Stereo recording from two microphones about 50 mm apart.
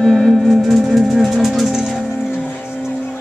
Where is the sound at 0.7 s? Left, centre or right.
Centre.